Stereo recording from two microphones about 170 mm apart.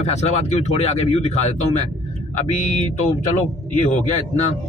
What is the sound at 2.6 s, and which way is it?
Speech, 45° left (ahead or behind).